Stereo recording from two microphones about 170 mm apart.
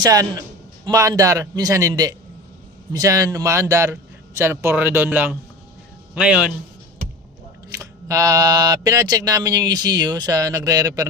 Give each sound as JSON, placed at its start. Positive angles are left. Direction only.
{"t": 0.0, "sound": "speech", "side_deg": -20}
{"t": 7.8, "sound": "speech", "side_deg": -20}